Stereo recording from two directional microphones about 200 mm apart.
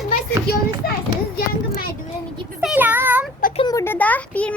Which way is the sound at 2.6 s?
10° right (ahead or behind).